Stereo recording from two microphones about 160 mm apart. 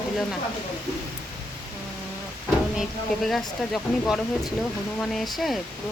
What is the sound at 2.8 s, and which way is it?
Speech, centre (ahead or behind).